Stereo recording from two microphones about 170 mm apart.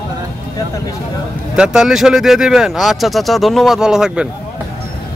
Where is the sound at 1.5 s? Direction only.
5° right (ahead or behind).